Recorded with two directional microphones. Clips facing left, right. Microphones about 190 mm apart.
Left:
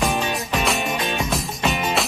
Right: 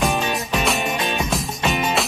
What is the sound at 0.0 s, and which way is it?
Music, centre (ahead or behind).